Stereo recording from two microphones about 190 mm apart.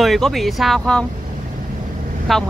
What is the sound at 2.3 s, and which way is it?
Speech, centre (ahead or behind).